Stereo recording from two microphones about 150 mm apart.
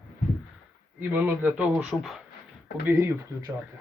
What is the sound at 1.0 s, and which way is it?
Speech, 10° right (ahead or behind).